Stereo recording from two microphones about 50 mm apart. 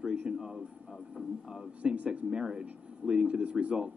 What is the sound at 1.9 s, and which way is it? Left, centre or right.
Speech, right.